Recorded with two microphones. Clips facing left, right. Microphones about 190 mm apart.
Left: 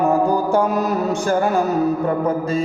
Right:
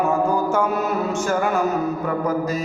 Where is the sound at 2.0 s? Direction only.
30° left (ahead or behind).